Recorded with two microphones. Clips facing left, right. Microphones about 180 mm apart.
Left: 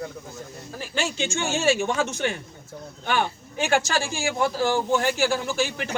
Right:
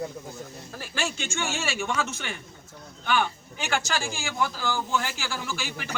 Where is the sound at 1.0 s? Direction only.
30° left (ahead or behind).